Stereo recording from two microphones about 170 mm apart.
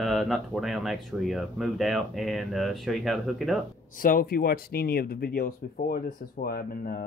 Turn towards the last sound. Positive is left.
turn(degrees=60)  # may be behind; listen again after turning